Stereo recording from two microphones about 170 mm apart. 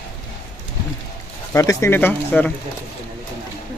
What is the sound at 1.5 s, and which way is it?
Speech, 15° left (ahead or behind).